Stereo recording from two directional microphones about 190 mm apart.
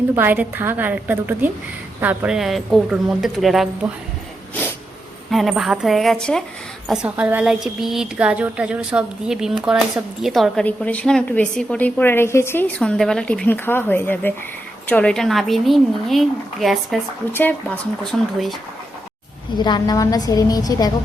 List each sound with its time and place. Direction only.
0.2 s a woman's voice: 10° right (ahead or behind)
5.3 s a woman's voice: centre (ahead or behind)
18.0 s a woman's voice: centre (ahead or behind)
19.5 s a woman's voice: 25° left (ahead or behind)